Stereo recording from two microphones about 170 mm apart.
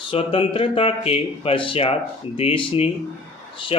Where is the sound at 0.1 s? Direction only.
35° left (ahead or behind).